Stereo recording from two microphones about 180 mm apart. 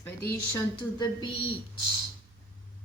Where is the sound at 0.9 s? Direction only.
25° left (ahead or behind).